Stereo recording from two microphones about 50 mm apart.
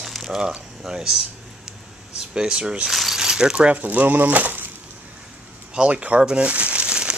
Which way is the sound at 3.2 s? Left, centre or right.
Centre.